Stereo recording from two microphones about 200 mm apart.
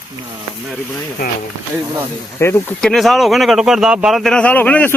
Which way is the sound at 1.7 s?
10° right (ahead or behind).